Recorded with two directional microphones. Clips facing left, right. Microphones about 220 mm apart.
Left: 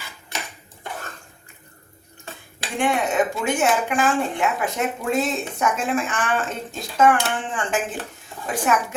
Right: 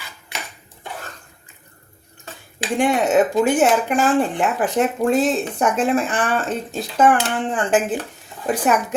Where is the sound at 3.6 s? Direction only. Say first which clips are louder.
Right 4 dB; 35° right (ahead or behind).